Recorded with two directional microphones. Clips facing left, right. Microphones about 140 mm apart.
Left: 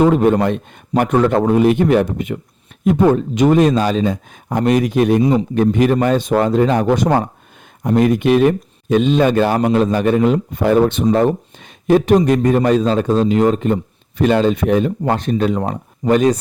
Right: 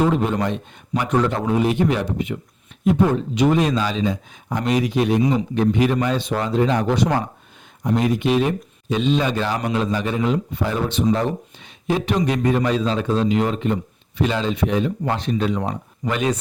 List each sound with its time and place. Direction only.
0.0 s speech: 50° left (ahead or behind)